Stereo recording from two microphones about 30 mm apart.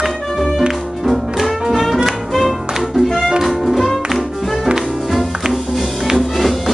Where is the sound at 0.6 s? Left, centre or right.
Centre.